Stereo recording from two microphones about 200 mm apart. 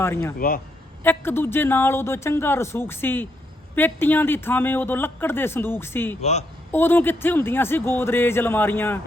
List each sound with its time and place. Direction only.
0.0 s speech: 10° left (ahead or behind)
0.3 s speech: 45° left (ahead or behind)
1.0 s speech: 10° left (ahead or behind)